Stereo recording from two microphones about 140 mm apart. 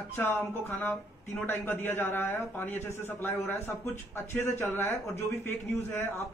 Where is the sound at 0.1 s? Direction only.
15° left (ahead or behind).